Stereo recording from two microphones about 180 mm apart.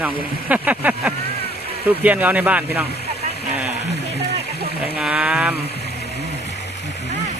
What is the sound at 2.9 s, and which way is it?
Vehicle, 65° left (ahead or behind).